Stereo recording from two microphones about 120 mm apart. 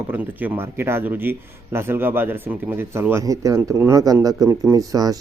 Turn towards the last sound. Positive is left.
turn(degrees=-30)  # may be behind; listen again after turning